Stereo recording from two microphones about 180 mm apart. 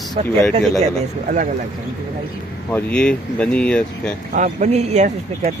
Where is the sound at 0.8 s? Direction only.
45° right (ahead or behind).